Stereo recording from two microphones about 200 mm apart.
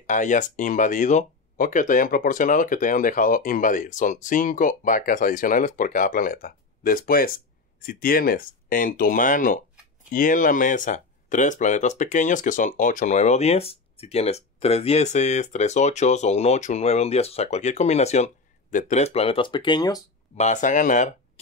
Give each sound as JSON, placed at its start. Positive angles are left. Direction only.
{"t": 0.0, "sound": "speech", "side_deg": 40}
{"t": 20.3, "sound": "speech", "side_deg": 35}